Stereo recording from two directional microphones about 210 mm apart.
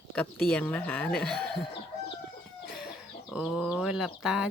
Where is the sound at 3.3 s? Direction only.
Centre (ahead or behind).